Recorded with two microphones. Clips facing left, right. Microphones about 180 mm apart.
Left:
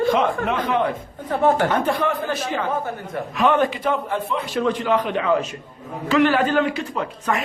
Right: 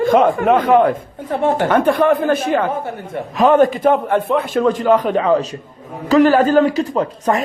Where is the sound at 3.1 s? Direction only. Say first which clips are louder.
Right 6 dB; 35° right (ahead or behind).